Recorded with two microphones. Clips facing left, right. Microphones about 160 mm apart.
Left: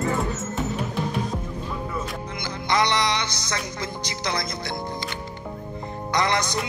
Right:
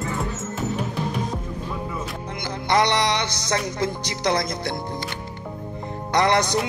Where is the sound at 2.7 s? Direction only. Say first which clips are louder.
Right 2 dB; 65° right (ahead or behind).